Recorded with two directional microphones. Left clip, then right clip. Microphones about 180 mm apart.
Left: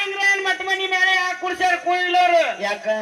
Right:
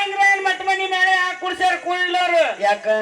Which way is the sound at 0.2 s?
20° right (ahead or behind).